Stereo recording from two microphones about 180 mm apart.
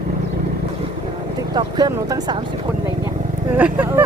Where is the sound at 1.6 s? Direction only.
20° right (ahead or behind).